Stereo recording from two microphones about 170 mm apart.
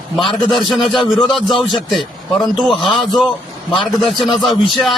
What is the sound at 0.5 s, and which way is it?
Speech, centre (ahead or behind).